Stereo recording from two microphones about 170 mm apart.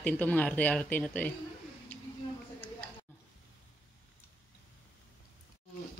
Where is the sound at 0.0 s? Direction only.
10° left (ahead or behind).